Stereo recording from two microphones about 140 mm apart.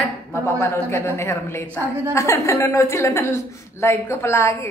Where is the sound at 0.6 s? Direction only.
20° left (ahead or behind).